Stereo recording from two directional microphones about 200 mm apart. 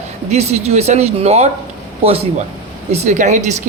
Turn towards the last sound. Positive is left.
turn(degrees=-35)  # may be behind; listen again after turning